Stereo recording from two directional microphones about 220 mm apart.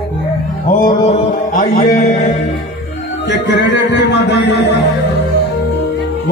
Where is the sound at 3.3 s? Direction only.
55° left (ahead or behind).